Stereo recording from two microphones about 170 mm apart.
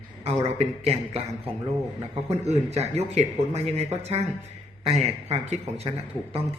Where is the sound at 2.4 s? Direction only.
40° right (ahead or behind).